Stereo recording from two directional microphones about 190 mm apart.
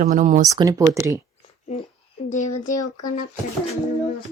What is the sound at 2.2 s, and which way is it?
Speech, 40° left (ahead or behind).